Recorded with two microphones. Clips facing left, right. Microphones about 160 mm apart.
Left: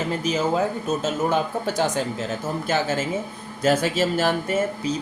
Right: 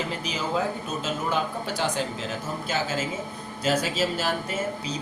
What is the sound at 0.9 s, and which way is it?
Speech, 45° left (ahead or behind).